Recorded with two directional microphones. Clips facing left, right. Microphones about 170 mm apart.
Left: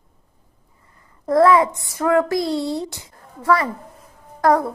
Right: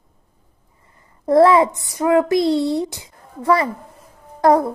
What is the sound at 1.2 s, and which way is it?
A child's voice, 25° right (ahead or behind).